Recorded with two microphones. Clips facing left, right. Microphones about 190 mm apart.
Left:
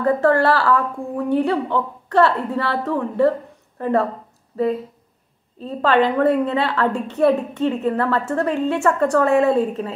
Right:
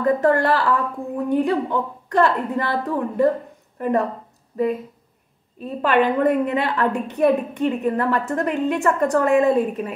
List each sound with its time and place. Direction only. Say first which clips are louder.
0.0 s a woman's voice: left 1 dB; 20° right (ahead or behind)